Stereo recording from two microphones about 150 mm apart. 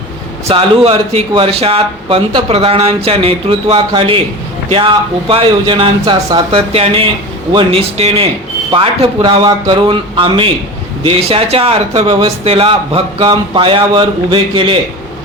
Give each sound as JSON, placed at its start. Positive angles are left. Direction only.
{"t": 0.4, "sound": "speech", "side_deg": -40}